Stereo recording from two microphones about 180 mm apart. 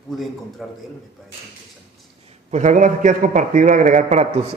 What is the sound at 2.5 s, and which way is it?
A man's voice, 45° right (ahead or behind).